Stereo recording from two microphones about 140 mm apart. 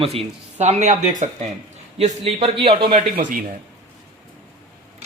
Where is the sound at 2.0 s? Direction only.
45° right (ahead or behind).